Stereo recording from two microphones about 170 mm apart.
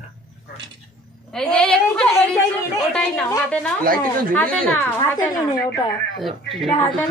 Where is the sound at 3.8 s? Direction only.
55° right (ahead or behind).